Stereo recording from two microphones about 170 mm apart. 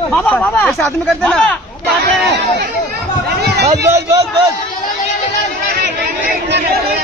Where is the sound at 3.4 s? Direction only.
75° right (ahead or behind).